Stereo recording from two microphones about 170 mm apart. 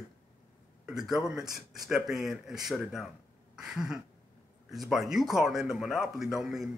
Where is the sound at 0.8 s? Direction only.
5° right (ahead or behind).